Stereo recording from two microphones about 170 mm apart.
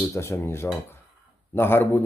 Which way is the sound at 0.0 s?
15° left (ahead or behind).